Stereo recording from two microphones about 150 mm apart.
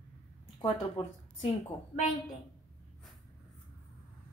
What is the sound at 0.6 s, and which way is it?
Speech, 35° left (ahead or behind).